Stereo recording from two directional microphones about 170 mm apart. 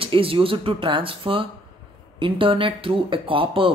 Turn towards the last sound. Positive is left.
turn(degrees=-30)  # may be behind; listen again after turning